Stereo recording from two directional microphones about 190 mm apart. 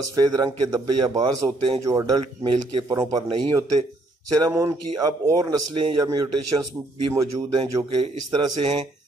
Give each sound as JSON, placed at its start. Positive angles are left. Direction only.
{"t": 0.1, "sound": "a man's voice", "side_deg": -20}